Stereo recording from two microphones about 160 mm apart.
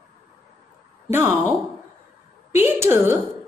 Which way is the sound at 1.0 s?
15° right (ahead or behind).